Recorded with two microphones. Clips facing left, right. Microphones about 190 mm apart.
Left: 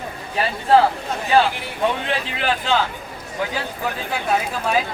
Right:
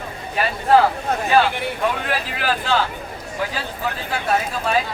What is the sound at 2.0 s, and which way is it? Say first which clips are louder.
Speech: even; 20° left (ahead or behind).